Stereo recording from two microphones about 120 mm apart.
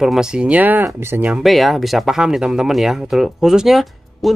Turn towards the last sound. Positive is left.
turn(degrees=0)  # may be behind; listen again after turning